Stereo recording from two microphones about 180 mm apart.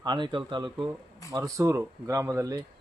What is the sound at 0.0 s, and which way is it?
Speech, 25° right (ahead or behind).